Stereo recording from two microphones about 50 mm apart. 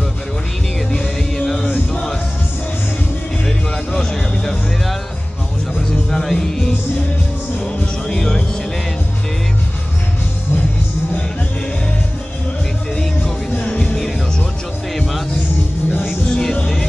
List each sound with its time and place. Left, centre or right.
0.9 s music: centre
3.4 s music: centre
5.8 s music: centre
8.1 s music: centre
13.7 s music: left